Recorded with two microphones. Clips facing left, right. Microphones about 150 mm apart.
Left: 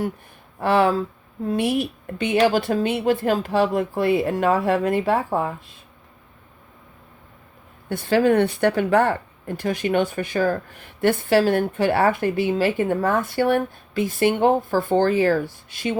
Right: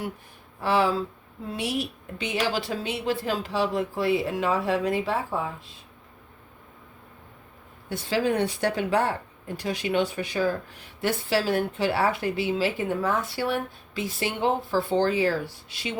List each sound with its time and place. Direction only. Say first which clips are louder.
0.6 s speech: left 5 dB; 55° left (ahead or behind)
7.9 s speech: left 7 dB; 55° left (ahead or behind)